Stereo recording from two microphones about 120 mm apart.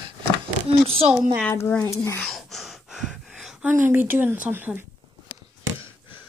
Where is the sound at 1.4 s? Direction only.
15° left (ahead or behind).